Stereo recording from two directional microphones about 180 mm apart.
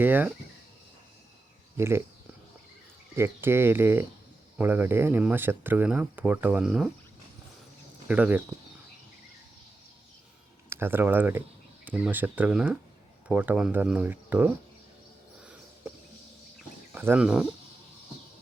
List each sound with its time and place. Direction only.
0.0 s speech: 10° right (ahead or behind)
1.7 s speech: 15° right (ahead or behind)
3.2 s speech: 15° right (ahead or behind)
8.0 s speech: 10° right (ahead or behind)
10.7 s speech: 10° right (ahead or behind)
16.9 s speech: 10° right (ahead or behind)